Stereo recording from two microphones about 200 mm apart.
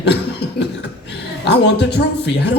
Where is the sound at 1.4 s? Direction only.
55° left (ahead or behind).